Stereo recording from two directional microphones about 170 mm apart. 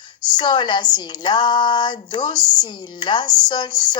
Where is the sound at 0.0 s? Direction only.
25° left (ahead or behind).